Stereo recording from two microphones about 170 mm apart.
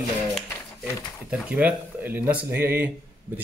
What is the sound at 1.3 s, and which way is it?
Speech, 10° right (ahead or behind).